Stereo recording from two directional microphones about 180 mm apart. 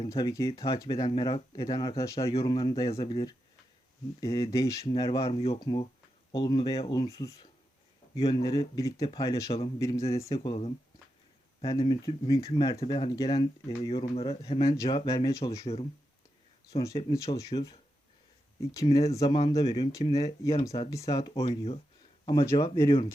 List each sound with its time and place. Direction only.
0.1 s speech: 20° left (ahead or behind)
0.9 s speech: 30° left (ahead or behind)
4.2 s speech: 20° left (ahead or behind)
5.3 s speech: 35° left (ahead or behind)
5.5 s speech: 25° left (ahead or behind)
9.5 s speech: 35° left (ahead or behind)
9.8 s speech: 15° left (ahead or behind)
11.8 s speech: 25° left (ahead or behind)
13.9 s speech: 30° left (ahead or behind)
14.8 s speech: 20° left (ahead or behind)
15.6 s speech: 35° left (ahead or behind)
16.7 s speech: 20° left (ahead or behind)
19.4 s speech: 30° left (ahead or behind)